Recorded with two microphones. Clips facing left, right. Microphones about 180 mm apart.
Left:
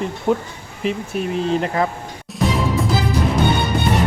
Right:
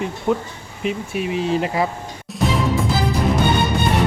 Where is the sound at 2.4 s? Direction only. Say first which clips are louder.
Left 1 dB; centre (ahead or behind).